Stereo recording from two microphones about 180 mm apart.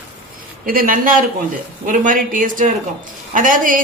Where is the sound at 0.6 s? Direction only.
50° right (ahead or behind).